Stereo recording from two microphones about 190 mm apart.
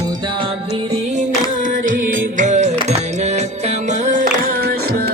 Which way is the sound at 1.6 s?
45° right (ahead or behind).